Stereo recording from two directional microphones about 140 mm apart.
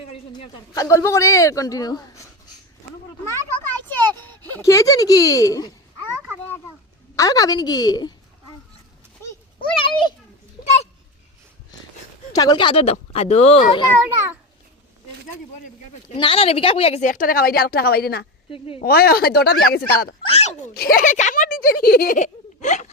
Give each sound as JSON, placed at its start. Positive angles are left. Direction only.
{"t": 0.7, "sound": "speech", "side_deg": 25}
{"t": 3.6, "sound": "a sound", "side_deg": 15}
{"t": 4.5, "sound": "speech", "side_deg": 20}
{"t": 7.2, "sound": "speech", "side_deg": 25}
{"t": 9.6, "sound": "a child's voice", "side_deg": 40}
{"t": 10.6, "sound": "a sound", "side_deg": 50}
{"t": 12.3, "sound": "speech", "side_deg": 30}
{"t": 16.1, "sound": "speech", "side_deg": 40}
{"t": 17.0, "sound": "a woman's voice", "side_deg": 70}
{"t": 20.3, "sound": "speech", "side_deg": 55}
{"t": 20.7, "sound": "speech", "side_deg": 90}